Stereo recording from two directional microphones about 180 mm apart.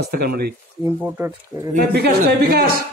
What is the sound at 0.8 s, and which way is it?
Speech, 10° right (ahead or behind).